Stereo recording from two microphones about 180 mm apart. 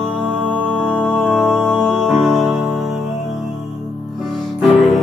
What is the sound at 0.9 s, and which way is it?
Music, 5° left (ahead or behind).